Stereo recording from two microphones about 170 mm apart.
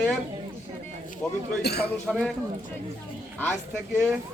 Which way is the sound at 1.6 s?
75° left (ahead or behind).